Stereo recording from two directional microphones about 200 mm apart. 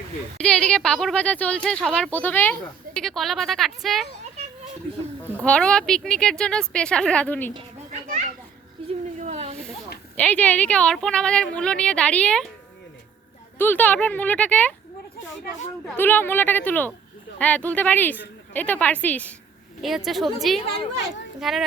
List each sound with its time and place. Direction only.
0.3 s speech: 5° left (ahead or behind)
5.5 s speech: 5° left (ahead or behind)
7.9 s children playing: 35° right (ahead or behind)
8.9 s a sound: 35° right (ahead or behind)
10.2 s speech: 5° left (ahead or behind)
13.6 s speech: 10° left (ahead or behind)
15.9 s speech: 10° left (ahead or behind)